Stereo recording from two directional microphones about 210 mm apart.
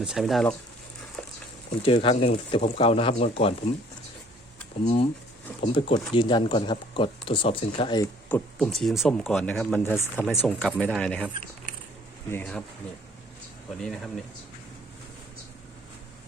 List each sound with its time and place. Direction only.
0.0 s speech: centre (ahead or behind)
1.8 s speech: 25° left (ahead or behind)
5.5 s speech: 25° left (ahead or behind)
8.3 s speech: 5° left (ahead or behind)
12.3 s speech: 5° left (ahead or behind)
13.8 s speech: centre (ahead or behind)